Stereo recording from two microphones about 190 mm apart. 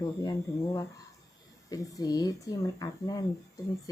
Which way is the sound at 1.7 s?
20° left (ahead or behind).